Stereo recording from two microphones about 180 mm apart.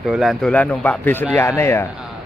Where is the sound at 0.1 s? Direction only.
Centre (ahead or behind).